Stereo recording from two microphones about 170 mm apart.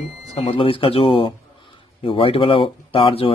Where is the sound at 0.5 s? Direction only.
30° left (ahead or behind).